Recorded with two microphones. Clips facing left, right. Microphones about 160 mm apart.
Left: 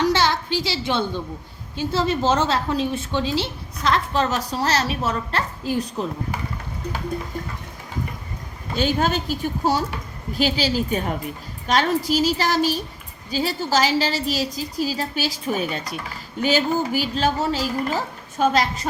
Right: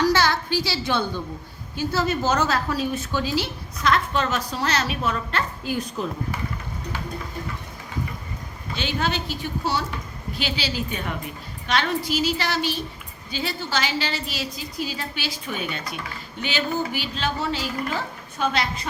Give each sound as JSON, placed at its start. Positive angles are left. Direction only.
{"t": 0.0, "sound": "a sound", "side_deg": 20}
{"t": 1.7, "sound": "a woman's voice", "side_deg": 25}
{"t": 8.7, "sound": "a woman's voice", "side_deg": 45}